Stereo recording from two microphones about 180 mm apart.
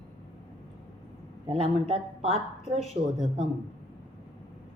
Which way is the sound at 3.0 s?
50° right (ahead or behind).